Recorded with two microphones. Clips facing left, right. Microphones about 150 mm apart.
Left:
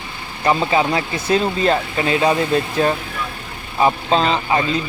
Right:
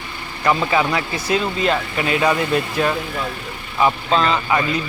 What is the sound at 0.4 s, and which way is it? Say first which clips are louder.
Speech: left 1 dB; 25° left (ahead or behind).